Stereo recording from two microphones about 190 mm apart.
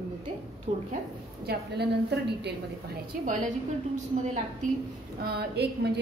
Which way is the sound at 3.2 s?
45° right (ahead or behind).